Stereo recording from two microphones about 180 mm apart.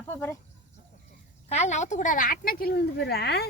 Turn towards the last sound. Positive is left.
turn(degrees=65)  # may be behind; listen again after turning